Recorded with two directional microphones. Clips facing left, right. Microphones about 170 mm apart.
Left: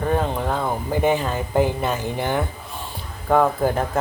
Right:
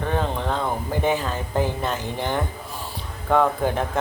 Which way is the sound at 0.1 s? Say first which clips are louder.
Left 2 dB; 10° left (ahead or behind).